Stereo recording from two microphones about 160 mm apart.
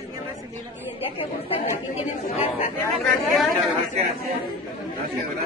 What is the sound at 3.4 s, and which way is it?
Speech, centre (ahead or behind).